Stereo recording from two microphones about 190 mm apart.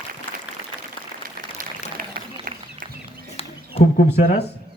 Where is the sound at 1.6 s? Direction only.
50° right (ahead or behind).